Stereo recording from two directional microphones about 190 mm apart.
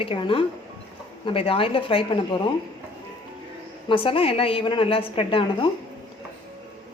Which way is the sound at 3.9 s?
30° left (ahead or behind).